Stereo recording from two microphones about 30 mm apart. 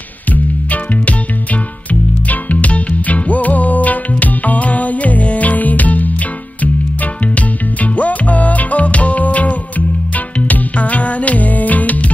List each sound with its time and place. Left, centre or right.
0.3 s music: left
7.3 s music: left